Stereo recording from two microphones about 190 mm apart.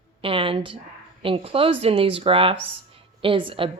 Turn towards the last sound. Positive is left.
turn(degrees=-25)  # may be behind; listen again after turning